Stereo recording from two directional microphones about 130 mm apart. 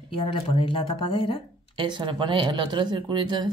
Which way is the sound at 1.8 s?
40° right (ahead or behind).